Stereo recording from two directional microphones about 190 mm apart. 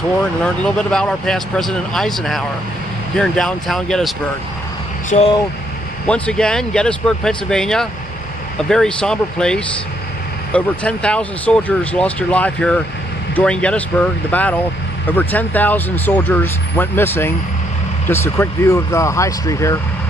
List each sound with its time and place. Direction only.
0.2 s speech: 5° left (ahead or behind)
5.1 s speech: 40° left (ahead or behind)
6.0 s speech: 5° left (ahead or behind)